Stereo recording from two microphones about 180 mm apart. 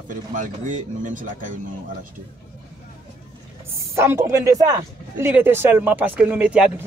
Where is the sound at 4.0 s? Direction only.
15° right (ahead or behind).